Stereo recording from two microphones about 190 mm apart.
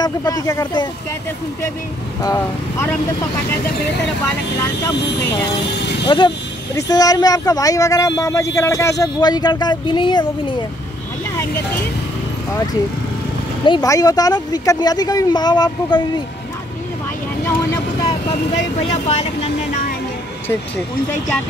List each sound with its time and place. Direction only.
0.0 s speech: 20° left (ahead or behind)
2.2 s speech: 15° left (ahead or behind)
5.2 s speech: 15° left (ahead or behind)
13.7 s speech: 20° left (ahead or behind)
18.9 s speech: 35° left (ahead or behind)